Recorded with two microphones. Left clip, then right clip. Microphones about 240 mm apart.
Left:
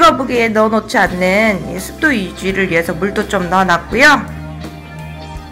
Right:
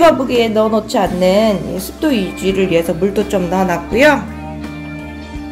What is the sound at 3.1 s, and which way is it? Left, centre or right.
A woman's voice, centre.